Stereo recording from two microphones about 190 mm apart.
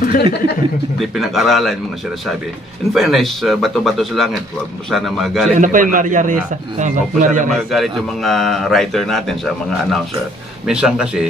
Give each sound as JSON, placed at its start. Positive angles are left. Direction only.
{"t": 0.0, "sound": "speech", "side_deg": 50}
{"t": 0.9, "sound": "a man's voice", "side_deg": 0}
{"t": 2.9, "sound": "a man's voice", "side_deg": 0}
{"t": 5.6, "sound": "a man's voice", "side_deg": -45}
{"t": 7.5, "sound": "a man's voice", "side_deg": 0}
{"t": 10.7, "sound": "a man's voice", "side_deg": -5}